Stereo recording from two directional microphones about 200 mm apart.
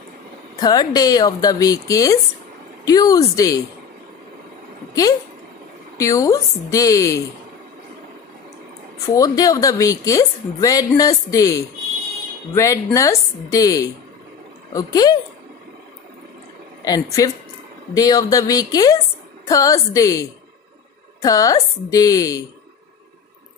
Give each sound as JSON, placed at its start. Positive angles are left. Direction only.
{"t": 0.6, "sound": "a woman's voice", "side_deg": 20}
{"t": 5.9, "sound": "a woman's voice", "side_deg": 15}
{"t": 8.9, "sound": "a woman's voice", "side_deg": 15}
{"t": 16.8, "sound": "a woman's voice", "side_deg": 20}